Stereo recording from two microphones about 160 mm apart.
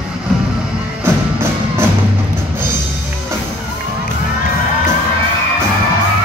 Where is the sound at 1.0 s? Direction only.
15° right (ahead or behind).